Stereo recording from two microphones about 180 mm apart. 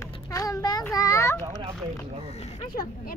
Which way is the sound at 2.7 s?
50° left (ahead or behind).